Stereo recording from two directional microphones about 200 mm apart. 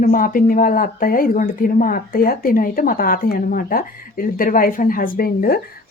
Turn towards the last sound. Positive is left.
turn(degrees=45)  # may be behind; listen again after turning